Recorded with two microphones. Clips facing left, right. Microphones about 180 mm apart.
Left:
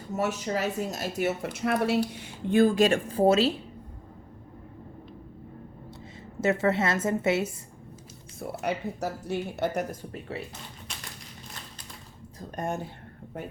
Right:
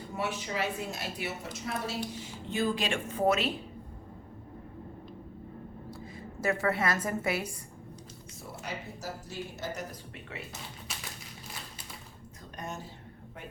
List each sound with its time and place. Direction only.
0.1 s a woman's voice: 45° left (ahead or behind)
5.9 s a woman's voice: 25° left (ahead or behind)
8.4 s speech: 65° left (ahead or behind)
10.1 s speech: 35° left (ahead or behind)
12.4 s speech: 50° left (ahead or behind)